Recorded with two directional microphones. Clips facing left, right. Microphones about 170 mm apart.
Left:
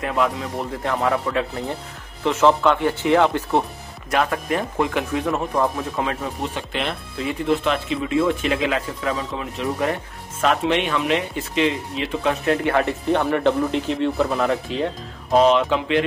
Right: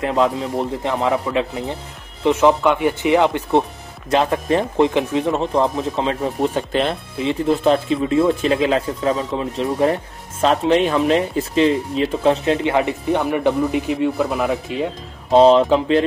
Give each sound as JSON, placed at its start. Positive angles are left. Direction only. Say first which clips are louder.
{"t": 0.0, "sound": "speech", "louder": "right 4 dB", "side_deg": -25}
{"t": 6.4, "sound": "speech", "louder": "right 9 dB", "side_deg": -40}
{"t": 12.4, "sound": "speech", "louder": "right 2 dB", "side_deg": -20}
{"t": 15.3, "sound": "speech", "louder": "right 5 dB", "side_deg": -30}